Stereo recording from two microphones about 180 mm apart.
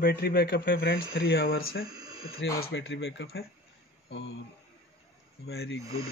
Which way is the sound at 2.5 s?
65° left (ahead or behind).